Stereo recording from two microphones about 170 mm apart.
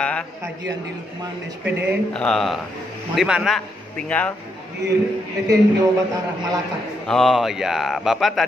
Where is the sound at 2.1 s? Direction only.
5° left (ahead or behind).